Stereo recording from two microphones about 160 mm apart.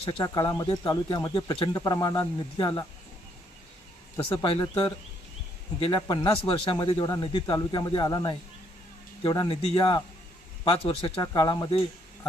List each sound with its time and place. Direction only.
0.0 s speech: 25° left (ahead or behind)
4.4 s speech: 25° left (ahead or behind)
5.8 s speech: 30° left (ahead or behind)